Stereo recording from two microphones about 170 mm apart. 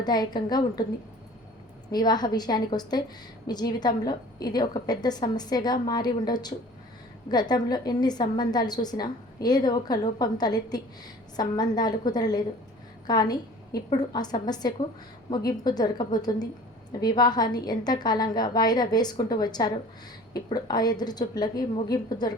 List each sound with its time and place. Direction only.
0.0 s a woman's voice: 25° left (ahead or behind)
1.9 s a woman's voice: 25° left (ahead or behind)